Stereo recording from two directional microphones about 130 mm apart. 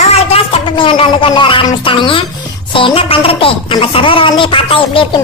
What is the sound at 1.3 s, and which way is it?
A woman's voice, 40° left (ahead or behind).